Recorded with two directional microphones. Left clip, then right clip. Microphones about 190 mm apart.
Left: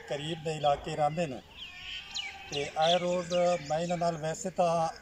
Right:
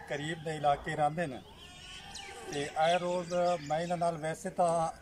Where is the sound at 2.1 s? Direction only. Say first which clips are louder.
Left 10 dB; 90° right.